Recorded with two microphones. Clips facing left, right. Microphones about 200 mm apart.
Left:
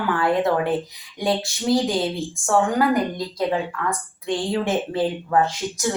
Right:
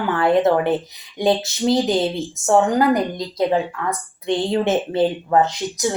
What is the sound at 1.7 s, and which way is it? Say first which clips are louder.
Speech: right 1 dB; 20° right (ahead or behind).